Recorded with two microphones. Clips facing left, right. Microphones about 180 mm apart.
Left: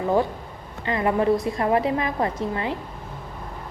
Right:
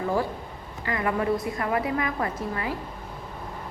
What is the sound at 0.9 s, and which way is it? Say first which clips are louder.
A woman's voice: left 5 dB; 25° left (ahead or behind).